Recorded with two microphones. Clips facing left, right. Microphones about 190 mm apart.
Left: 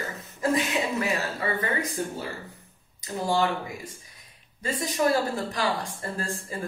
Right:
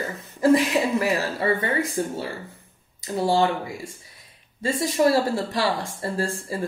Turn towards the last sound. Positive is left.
turn(degrees=-30)  # may be behind; listen again after turning